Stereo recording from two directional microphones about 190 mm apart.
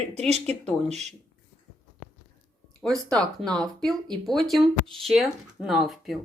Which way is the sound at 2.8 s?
5° left (ahead or behind).